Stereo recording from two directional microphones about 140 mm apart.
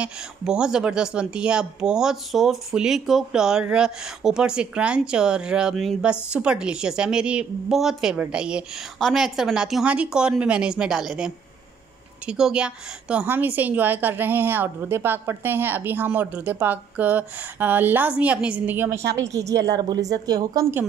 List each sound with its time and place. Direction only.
0.0 s a woman's voice: 5° right (ahead or behind); by 20.8 s 25° right (ahead or behind)